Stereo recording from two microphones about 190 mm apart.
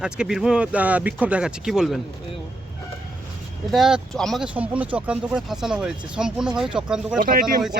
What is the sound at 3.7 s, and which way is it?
Speech, centre (ahead or behind).